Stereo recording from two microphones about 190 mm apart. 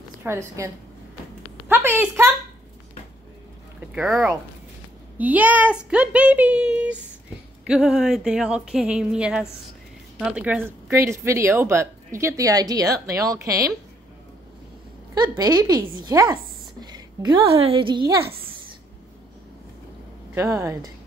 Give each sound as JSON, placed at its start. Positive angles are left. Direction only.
{"t": 0.2, "sound": "a woman's voice", "side_deg": -15}
{"t": 1.7, "sound": "a sound", "side_deg": -10}
{"t": 3.8, "sound": "a woman's voice", "side_deg": -5}
{"t": 15.1, "sound": "a woman's voice", "side_deg": -20}
{"t": 20.3, "sound": "a woman's voice", "side_deg": -15}